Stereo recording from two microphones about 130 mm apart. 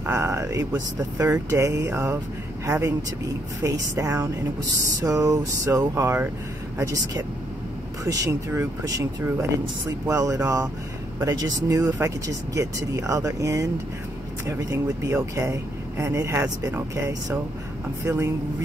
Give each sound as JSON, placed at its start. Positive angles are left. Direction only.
{"t": 0.0, "sound": "speech", "side_deg": -20}
{"t": 12.0, "sound": "speech", "side_deg": -15}